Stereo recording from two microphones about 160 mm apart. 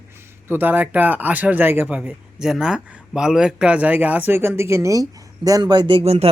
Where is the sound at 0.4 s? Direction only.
15° right (ahead or behind).